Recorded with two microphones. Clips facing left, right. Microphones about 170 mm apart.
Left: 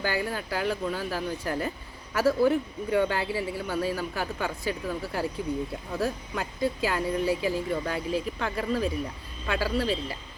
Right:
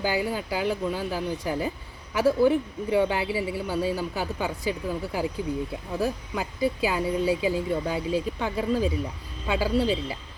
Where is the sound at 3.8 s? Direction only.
20° right (ahead or behind).